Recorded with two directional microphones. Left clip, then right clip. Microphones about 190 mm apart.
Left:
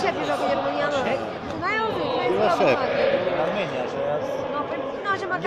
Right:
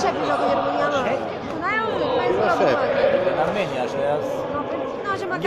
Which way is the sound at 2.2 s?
45° left (ahead or behind).